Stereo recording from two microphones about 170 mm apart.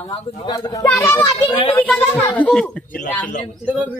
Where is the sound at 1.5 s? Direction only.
30° left (ahead or behind).